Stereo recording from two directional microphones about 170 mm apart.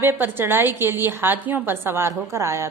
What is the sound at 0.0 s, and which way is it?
A woman's voice, 15° right (ahead or behind).